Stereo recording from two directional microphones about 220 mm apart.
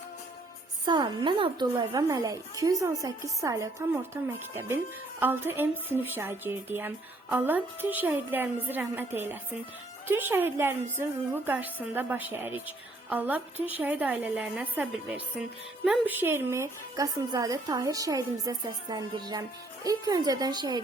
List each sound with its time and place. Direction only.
0.9 s a woman's voice: 20° right (ahead or behind)